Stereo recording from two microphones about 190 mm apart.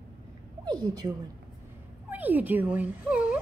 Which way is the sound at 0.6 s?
20° right (ahead or behind).